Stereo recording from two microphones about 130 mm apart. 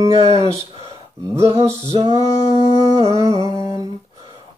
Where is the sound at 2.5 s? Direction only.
35° left (ahead or behind).